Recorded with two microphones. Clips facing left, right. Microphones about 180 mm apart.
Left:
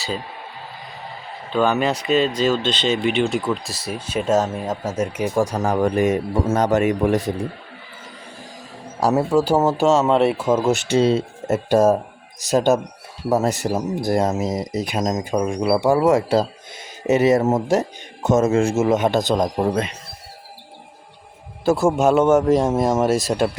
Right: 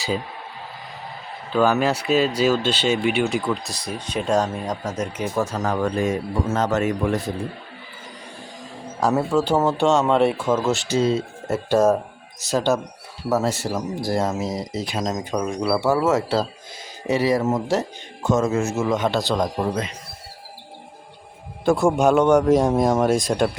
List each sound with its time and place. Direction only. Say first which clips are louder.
1.5 s speech: even; 5° right (ahead or behind); by 6.9 s 15° left (ahead or behind)
9.0 s a man's voice: left 2 dB; 10° left (ahead or behind)
21.6 s a man's voice: left 1 dB; 5° left (ahead or behind)